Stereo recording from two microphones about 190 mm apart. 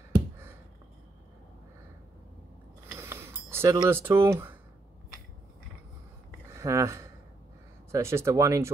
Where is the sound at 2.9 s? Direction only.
10° right (ahead or behind).